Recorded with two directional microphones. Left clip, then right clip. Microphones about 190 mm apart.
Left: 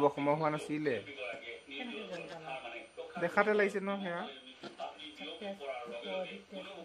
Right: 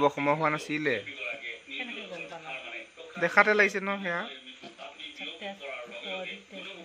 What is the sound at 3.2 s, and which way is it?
Speech, 15° right (ahead or behind).